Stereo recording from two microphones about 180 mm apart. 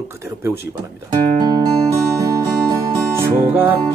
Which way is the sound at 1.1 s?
25° right (ahead or behind).